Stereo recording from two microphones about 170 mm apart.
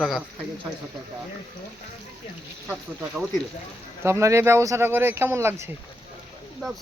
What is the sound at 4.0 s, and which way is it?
Speech, 15° right (ahead or behind).